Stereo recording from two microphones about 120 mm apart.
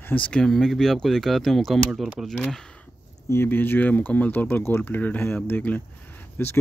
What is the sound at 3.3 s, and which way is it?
Speech, 20° left (ahead or behind).